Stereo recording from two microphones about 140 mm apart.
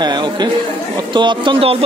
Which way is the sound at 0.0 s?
30° right (ahead or behind).